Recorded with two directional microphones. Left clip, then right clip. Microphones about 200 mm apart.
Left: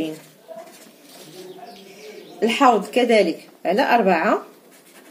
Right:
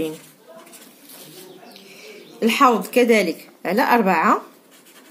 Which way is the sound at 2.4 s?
45° right (ahead or behind).